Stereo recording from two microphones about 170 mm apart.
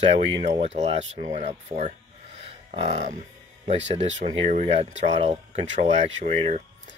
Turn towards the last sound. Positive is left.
turn(degrees=-40)  # may be behind; listen again after turning